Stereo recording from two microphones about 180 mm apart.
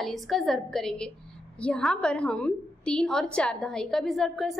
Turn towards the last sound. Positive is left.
turn(degrees=0)  # may be behind; listen again after turning